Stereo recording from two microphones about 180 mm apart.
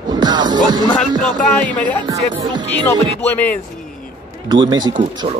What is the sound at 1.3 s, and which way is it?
Speech, 5° left (ahead or behind).